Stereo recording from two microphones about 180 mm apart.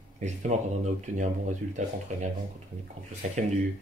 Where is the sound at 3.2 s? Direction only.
40° right (ahead or behind).